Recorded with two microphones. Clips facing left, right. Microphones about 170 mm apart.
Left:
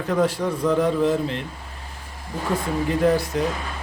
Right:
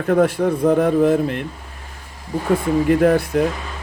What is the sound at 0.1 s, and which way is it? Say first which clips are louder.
A man's voice: right 6 dB; 55° right (ahead or behind).